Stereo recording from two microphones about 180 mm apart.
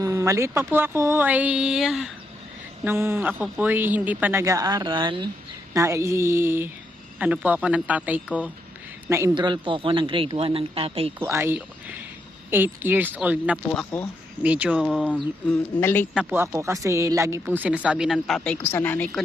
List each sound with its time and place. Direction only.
0.0 s a man's voice: 15° right (ahead or behind)
2.8 s a man's voice: 15° right (ahead or behind)
9.3 s speech: 25° right (ahead or behind)
11.2 s a man's voice: 10° right (ahead or behind); by 16.0 s 10° left (ahead or behind)
16.1 s a man's voice: 10° right (ahead or behind); by 19.2 s 10° left (ahead or behind)